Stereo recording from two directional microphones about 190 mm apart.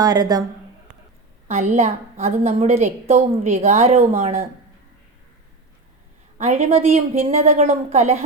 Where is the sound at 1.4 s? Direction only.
35° right (ahead or behind).